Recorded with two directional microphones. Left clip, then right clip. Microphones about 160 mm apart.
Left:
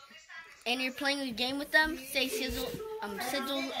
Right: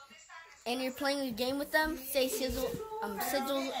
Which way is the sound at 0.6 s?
35° right (ahead or behind).